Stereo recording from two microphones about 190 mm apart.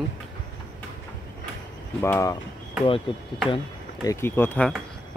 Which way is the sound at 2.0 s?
15° left (ahead or behind).